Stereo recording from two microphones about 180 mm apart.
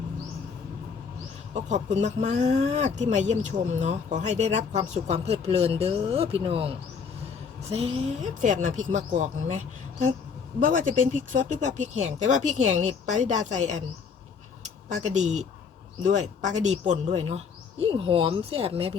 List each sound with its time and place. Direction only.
1.5 s speech: 40° right (ahead or behind)
15.0 s speech: 40° right (ahead or behind)